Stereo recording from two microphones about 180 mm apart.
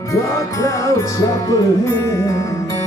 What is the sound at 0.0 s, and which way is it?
Music, 20° left (ahead or behind).